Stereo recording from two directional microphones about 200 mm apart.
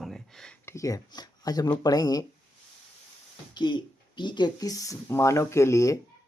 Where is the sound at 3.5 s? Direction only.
20° left (ahead or behind).